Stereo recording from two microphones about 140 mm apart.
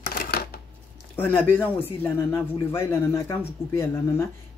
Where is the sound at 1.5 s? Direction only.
15° left (ahead or behind).